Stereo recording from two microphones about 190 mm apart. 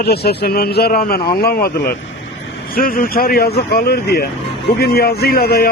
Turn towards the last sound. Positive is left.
turn(degrees=55)  # may be behind; listen again after turning